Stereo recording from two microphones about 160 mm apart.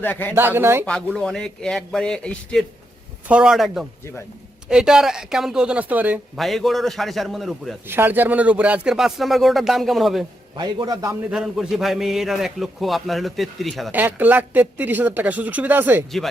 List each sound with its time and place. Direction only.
0.0 s speech: 10° left (ahead or behind)
0.3 s speech: 15° right (ahead or behind)
0.9 s a man's voice: 5° left (ahead or behind)
3.2 s a man's voice: 5° right (ahead or behind)
6.4 s a man's voice: centre (ahead or behind)
7.9 s a man's voice: 15° right (ahead or behind)
10.6 s a man's voice: 25° right (ahead or behind)
11.3 s a man's voice: 5° right (ahead or behind)
13.9 s speech: 10° right (ahead or behind)